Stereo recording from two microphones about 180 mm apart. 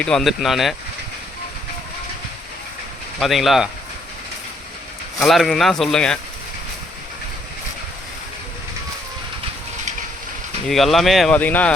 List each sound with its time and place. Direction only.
0.0 s speech: 5° left (ahead or behind)
3.2 s speech: centre (ahead or behind)
5.2 s speech: centre (ahead or behind)
10.7 s speech: centre (ahead or behind)